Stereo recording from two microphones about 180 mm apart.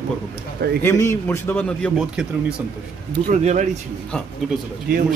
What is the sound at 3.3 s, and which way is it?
Speech, 40° right (ahead or behind).